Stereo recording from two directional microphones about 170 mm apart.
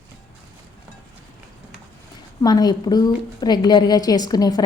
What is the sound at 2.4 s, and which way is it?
A woman's voice, 25° left (ahead or behind).